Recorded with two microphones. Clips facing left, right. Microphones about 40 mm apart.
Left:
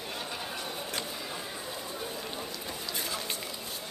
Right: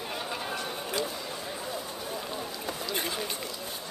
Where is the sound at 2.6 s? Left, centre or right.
Right.